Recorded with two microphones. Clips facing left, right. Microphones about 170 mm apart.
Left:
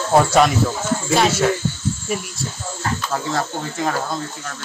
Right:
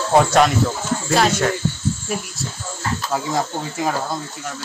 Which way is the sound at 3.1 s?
10° right (ahead or behind).